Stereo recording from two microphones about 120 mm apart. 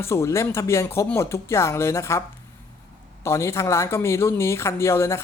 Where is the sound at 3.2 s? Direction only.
25° left (ahead or behind).